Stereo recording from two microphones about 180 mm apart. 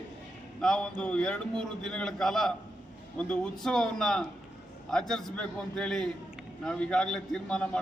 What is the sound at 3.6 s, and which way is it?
A man's voice, 5° left (ahead or behind).